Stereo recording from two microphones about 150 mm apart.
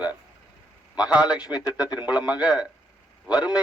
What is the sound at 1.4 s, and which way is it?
Speech, 25° left (ahead or behind).